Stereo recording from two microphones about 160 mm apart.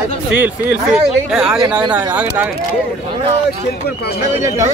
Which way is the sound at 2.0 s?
15° right (ahead or behind).